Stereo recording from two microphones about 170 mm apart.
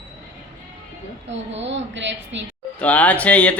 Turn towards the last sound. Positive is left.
turn(degrees=10)  # may be behind; listen again after turning